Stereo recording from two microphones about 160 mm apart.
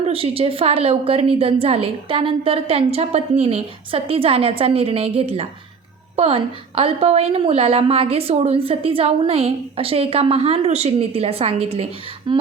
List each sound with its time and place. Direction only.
0.0 s a woman's voice: 35° right (ahead or behind)